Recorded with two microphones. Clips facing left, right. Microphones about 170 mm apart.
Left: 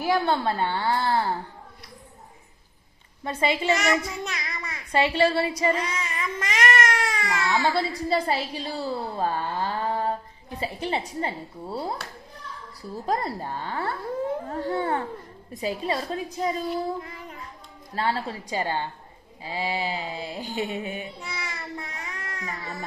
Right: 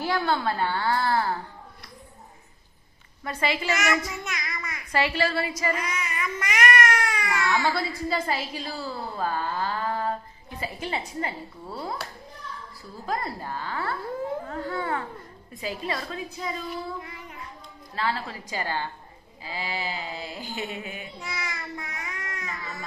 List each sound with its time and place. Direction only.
0.0 s a child's voice: 20° left (ahead or behind)
3.3 s a child's voice: 25° left (ahead or behind)
10.9 s a woman's voice: 35° left (ahead or behind)
13.0 s a child's voice: 35° left (ahead or behind)
17.9 s a child's voice: 35° left (ahead or behind)